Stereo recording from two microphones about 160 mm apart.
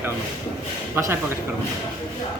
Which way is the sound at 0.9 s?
15° right (ahead or behind).